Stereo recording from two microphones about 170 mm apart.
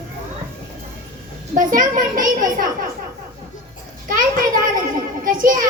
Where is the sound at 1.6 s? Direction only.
55° right (ahead or behind).